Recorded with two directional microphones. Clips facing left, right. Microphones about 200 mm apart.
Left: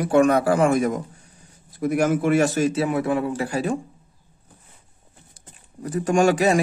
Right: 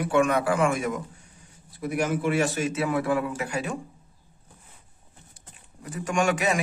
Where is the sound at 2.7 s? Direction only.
25° left (ahead or behind).